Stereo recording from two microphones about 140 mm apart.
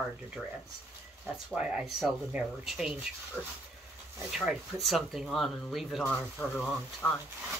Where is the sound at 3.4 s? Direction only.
10° left (ahead or behind).